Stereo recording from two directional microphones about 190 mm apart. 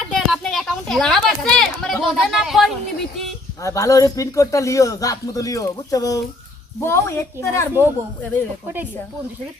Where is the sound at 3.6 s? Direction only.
15° left (ahead or behind).